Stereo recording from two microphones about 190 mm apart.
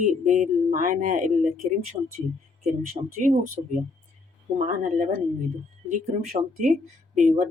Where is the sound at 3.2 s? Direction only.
40° right (ahead or behind).